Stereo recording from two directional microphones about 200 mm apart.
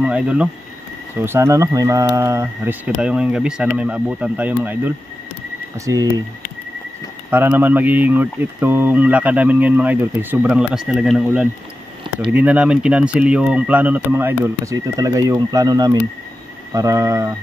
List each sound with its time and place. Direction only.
0.0 s speech: 5° right (ahead or behind)
7.2 s speech: 10° right (ahead or behind)